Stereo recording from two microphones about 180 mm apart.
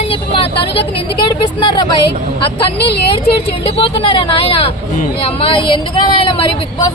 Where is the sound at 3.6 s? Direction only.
30° left (ahead or behind).